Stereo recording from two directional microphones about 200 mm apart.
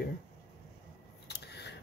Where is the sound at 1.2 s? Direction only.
55° left (ahead or behind).